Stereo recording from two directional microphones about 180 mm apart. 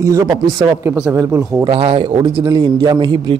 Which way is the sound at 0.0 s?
20° right (ahead or behind).